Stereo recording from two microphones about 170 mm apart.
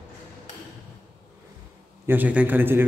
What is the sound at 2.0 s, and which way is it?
Speech, 10° right (ahead or behind).